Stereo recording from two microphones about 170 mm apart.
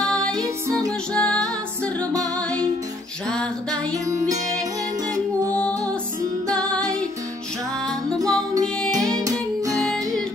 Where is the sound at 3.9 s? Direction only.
20° right (ahead or behind).